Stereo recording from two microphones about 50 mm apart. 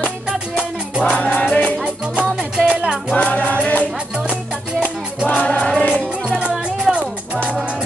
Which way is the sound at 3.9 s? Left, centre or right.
Right.